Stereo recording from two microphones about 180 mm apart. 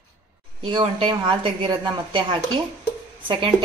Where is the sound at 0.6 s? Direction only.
30° right (ahead or behind).